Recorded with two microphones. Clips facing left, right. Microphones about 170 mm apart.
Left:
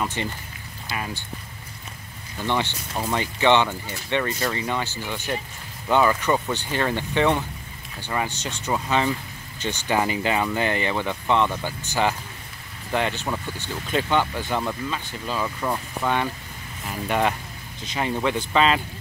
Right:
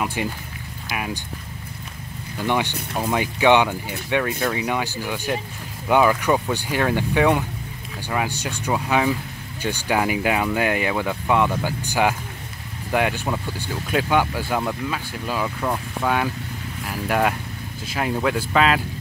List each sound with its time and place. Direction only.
0.0 s speech: 10° right (ahead or behind)
2.3 s speech: 10° right (ahead or behind)